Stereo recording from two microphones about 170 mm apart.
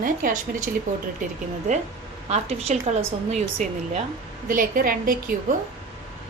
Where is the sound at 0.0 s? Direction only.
55° right (ahead or behind).